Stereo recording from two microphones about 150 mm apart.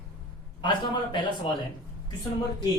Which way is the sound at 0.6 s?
30° left (ahead or behind).